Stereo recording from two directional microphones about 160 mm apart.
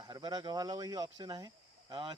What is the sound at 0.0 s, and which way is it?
Speech, 25° right (ahead or behind).